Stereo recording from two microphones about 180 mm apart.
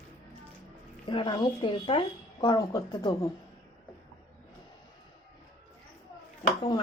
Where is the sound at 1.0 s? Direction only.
25° left (ahead or behind).